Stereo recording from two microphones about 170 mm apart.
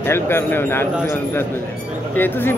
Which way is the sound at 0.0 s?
15° left (ahead or behind).